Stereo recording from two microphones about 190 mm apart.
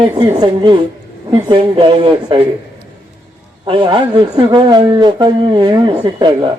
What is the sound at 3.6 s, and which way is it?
A man's voice, 25° right (ahead or behind).